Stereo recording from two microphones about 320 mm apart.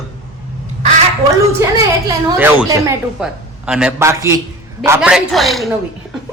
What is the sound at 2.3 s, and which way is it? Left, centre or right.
A man's voice, centre.